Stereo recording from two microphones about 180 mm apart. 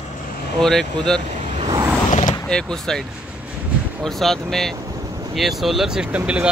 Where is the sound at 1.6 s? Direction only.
20° right (ahead or behind).